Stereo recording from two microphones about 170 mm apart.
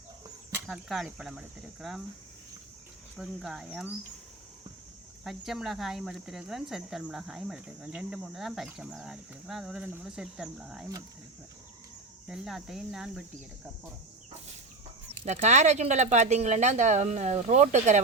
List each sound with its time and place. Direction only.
0.7 s speech: centre (ahead or behind)
3.2 s speech: 5° right (ahead or behind)
5.2 s speech: centre (ahead or behind)
12.3 s speech: centre (ahead or behind)
15.2 s speech: 40° right (ahead or behind)